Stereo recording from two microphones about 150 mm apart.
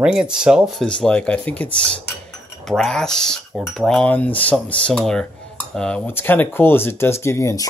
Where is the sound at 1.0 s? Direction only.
5° left (ahead or behind).